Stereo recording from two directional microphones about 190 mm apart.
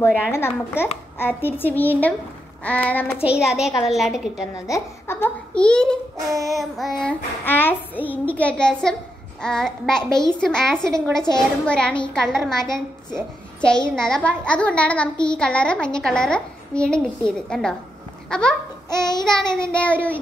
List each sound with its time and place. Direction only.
0.0 s a child's voice: 10° left (ahead or behind)
3.3 s a child's voice: 5° right (ahead or behind)
4.6 s a child's voice: 15° left (ahead or behind)
18.9 s child singing: 20° left (ahead or behind)
19.2 s a child's voice: 5° left (ahead or behind)